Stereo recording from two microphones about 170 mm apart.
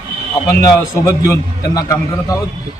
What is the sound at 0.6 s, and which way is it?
A man's voice, 20° left (ahead or behind).